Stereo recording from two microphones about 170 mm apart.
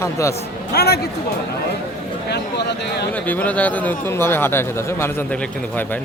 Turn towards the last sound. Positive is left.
turn(degrees=10)  # may be behind; listen again after turning